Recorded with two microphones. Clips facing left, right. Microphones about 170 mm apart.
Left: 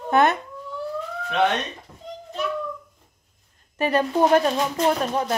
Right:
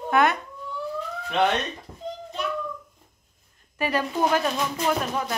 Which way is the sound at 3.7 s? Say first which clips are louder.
Left 4 dB; 30° left (ahead or behind).